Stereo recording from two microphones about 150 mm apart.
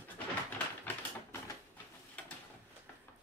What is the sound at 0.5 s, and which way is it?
Typewriter, 10° left (ahead or behind).